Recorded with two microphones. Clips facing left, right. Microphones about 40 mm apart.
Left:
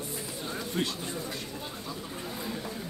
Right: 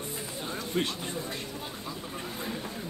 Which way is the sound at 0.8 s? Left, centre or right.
Right.